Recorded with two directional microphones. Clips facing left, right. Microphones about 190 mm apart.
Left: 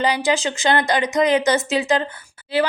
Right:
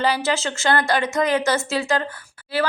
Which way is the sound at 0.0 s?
15° left (ahead or behind).